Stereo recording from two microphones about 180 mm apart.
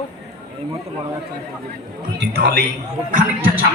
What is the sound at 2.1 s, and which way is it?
Speech, 60° right (ahead or behind).